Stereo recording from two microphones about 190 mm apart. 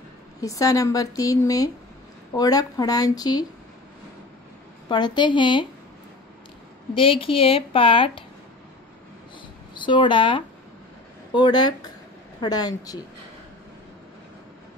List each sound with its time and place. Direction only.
0.4 s a woman's voice: 20° left (ahead or behind)
4.8 s a woman's voice: 25° left (ahead or behind)
6.9 s a woman's voice: 30° left (ahead or behind)
9.8 s a woman's voice: 25° left (ahead or behind)